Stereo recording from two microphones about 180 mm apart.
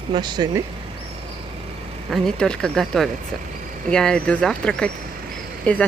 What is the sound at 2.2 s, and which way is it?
Speech, 5° left (ahead or behind).